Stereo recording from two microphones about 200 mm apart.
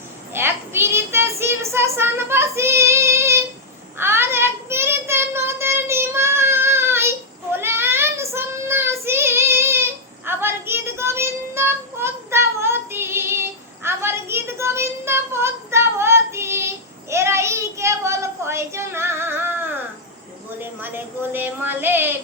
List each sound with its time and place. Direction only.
0.3 s child singing: 10° right (ahead or behind)
20.6 s a woman's voice: 10° right (ahead or behind)